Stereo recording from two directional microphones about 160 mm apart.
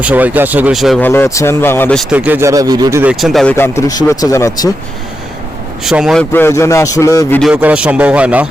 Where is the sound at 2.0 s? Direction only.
10° right (ahead or behind); by 3.0 s 25° right (ahead or behind).